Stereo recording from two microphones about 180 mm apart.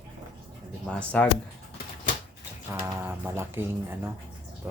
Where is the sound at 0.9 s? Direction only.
5° left (ahead or behind).